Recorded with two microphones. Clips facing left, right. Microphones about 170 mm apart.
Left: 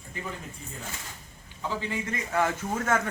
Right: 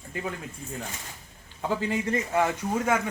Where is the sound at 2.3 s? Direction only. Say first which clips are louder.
Even; 15° right (ahead or behind).